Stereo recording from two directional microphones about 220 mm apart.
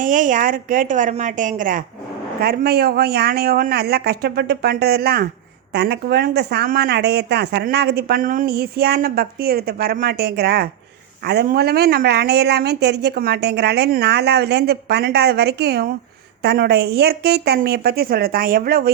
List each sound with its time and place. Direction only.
0.0 s a woman's voice: 35° right (ahead or behind)